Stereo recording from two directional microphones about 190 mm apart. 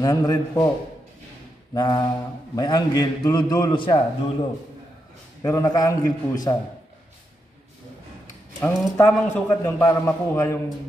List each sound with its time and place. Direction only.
0.0 s mantra: 20° left (ahead or behind)
1.7 s mantra: 20° left (ahead or behind)
8.5 s a man's voice: 10° left (ahead or behind)